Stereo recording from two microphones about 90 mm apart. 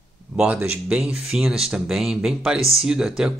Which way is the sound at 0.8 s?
10° right (ahead or behind).